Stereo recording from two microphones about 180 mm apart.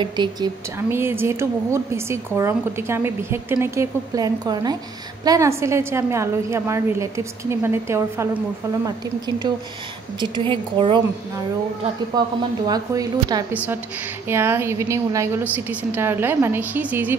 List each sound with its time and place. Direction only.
0.0 s a woman's voice: 25° right (ahead or behind)
0.7 s a woman's voice: 15° right (ahead or behind)
10.2 s a woman's voice: 25° right (ahead or behind)
12.1 s a woman's voice: 20° right (ahead or behind)